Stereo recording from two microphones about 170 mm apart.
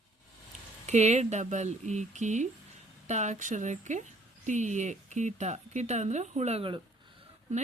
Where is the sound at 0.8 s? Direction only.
40° right (ahead or behind).